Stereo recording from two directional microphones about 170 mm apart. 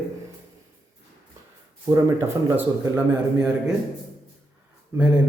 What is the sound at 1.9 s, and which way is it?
Speech, 15° right (ahead or behind).